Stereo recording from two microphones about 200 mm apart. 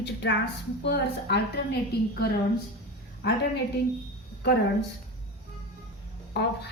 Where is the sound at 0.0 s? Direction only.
60° left (ahead or behind).